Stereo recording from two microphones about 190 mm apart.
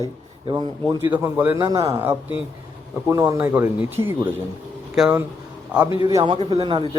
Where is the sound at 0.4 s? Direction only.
20° right (ahead or behind).